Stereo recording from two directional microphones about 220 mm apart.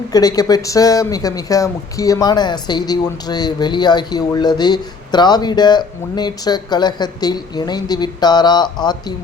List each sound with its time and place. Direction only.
0.1 s speech: 15° left (ahead or behind)